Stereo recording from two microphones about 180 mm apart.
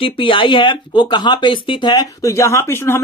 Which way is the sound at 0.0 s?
30° left (ahead or behind).